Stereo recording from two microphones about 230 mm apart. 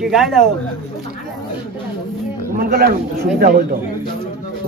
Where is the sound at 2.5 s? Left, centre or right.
Right.